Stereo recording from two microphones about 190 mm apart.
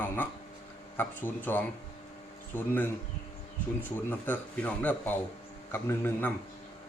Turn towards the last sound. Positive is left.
turn(degrees=10)  # may be behind; listen again after turning